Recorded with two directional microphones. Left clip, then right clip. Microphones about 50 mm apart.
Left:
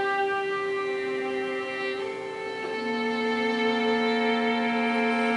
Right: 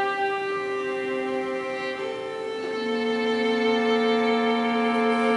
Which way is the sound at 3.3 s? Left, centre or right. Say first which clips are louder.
Right 3 dB; centre.